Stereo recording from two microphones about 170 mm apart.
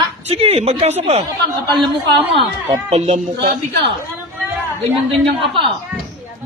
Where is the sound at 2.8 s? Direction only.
40° right (ahead or behind).